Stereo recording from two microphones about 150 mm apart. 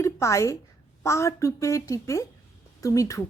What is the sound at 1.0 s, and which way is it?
A woman's voice, 20° left (ahead or behind).